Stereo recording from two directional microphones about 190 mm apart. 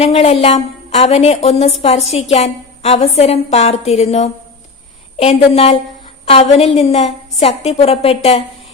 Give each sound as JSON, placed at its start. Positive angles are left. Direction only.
{"t": 0.0, "sound": "a woman's voice", "side_deg": 35}